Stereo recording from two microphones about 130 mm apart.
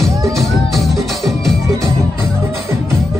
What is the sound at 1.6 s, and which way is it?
Music, 20° right (ahead or behind).